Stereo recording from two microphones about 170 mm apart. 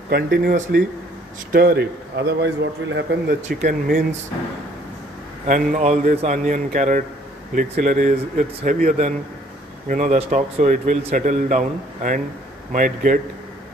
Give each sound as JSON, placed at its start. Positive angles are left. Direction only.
{"t": 0.1, "sound": "a man's voice", "side_deg": -65}
{"t": 3.4, "sound": "speech", "side_deg": -45}
{"t": 5.5, "sound": "a man's voice", "side_deg": -45}